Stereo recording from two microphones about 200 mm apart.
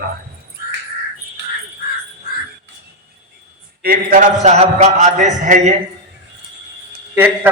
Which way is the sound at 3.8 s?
45° right (ahead or behind).